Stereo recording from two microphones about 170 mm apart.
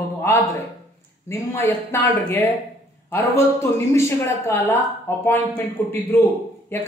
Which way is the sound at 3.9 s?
15° left (ahead or behind).